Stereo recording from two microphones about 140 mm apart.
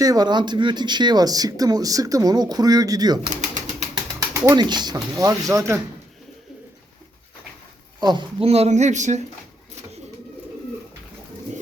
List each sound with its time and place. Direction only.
0.0 s speech: 25° right (ahead or behind)
4.4 s speech: 25° right (ahead or behind)
8.0 s speech: 30° right (ahead or behind)
8.4 s speech: 45° right (ahead or behind)